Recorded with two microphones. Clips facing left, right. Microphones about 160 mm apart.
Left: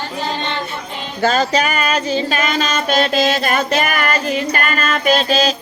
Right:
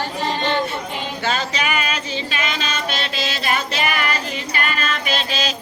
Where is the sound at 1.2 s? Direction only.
40° left (ahead or behind).